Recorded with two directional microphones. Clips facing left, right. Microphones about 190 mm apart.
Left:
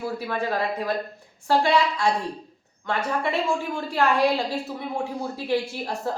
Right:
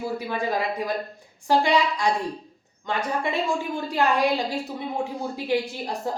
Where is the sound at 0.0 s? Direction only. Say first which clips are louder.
Even; 15° right (ahead or behind).